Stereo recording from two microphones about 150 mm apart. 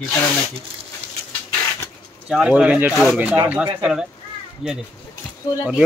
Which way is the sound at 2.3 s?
5° right (ahead or behind).